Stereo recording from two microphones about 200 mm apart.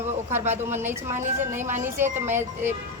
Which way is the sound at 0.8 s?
10° right (ahead or behind).